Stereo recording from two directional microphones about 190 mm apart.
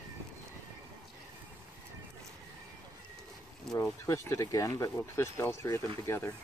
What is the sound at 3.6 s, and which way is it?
Speech, 5° left (ahead or behind).